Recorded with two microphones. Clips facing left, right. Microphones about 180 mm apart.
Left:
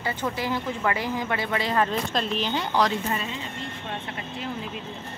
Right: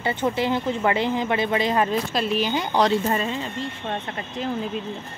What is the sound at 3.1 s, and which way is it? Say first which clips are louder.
Speech: right 6 dB; 40° right (ahead or behind).